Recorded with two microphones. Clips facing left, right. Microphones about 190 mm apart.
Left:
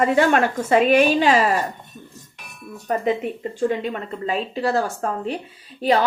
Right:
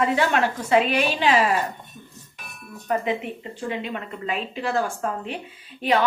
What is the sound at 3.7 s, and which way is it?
Speech, 40° left (ahead or behind).